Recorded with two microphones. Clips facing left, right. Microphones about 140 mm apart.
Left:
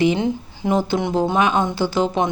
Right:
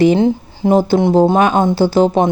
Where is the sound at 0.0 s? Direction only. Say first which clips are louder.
Right 7 dB; 35° right (ahead or behind).